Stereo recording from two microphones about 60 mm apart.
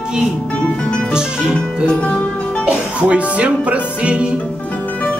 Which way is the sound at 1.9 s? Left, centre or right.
Left.